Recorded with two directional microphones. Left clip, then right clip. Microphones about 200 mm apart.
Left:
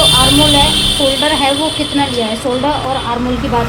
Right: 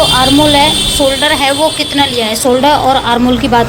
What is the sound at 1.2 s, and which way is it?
A woman's voice, 45° right (ahead or behind).